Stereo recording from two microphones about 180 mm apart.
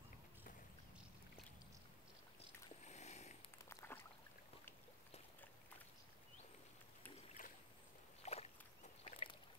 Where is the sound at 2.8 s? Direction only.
40° left (ahead or behind).